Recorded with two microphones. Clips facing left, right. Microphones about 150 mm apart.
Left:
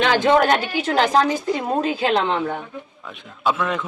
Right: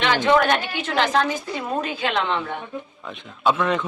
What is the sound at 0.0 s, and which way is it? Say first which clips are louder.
A woman's voice: left 2 dB; 45° left (ahead or behind).